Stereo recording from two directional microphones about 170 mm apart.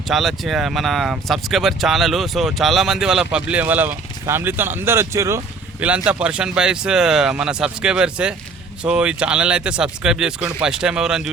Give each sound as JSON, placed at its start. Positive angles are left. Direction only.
{"t": 0.1, "sound": "speech", "side_deg": 0}
{"t": 6.1, "sound": "speech", "side_deg": -5}